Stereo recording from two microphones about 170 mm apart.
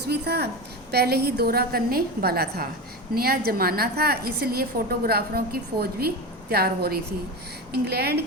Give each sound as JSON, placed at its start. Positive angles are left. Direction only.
{"t": 0.1, "sound": "a woman's voice", "side_deg": -70}